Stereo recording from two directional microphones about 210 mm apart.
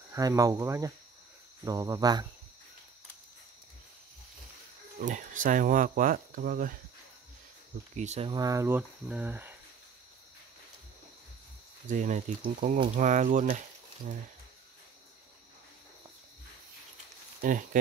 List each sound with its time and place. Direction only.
0.1 s speech: 15° right (ahead or behind)
5.0 s speech: 40° right (ahead or behind)
7.9 s speech: 35° right (ahead or behind); by 9.6 s 10° right (ahead or behind)
11.9 s speech: 35° right (ahead or behind)
17.4 s speech: 40° right (ahead or behind)